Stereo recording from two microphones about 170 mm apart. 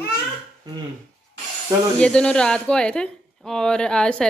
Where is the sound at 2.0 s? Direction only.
5° left (ahead or behind).